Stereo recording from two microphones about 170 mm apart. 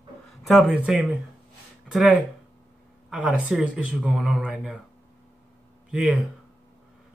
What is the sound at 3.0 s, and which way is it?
Speech, 10° right (ahead or behind).